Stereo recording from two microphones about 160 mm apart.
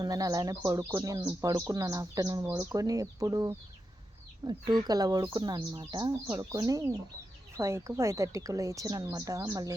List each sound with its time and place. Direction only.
0.0 s speech: 20° right (ahead or behind)